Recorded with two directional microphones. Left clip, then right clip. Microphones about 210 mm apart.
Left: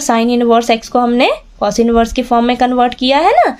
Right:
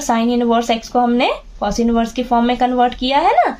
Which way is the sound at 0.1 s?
45° left (ahead or behind).